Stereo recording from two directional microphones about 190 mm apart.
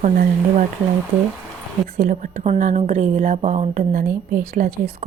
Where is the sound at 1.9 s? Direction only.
50° right (ahead or behind).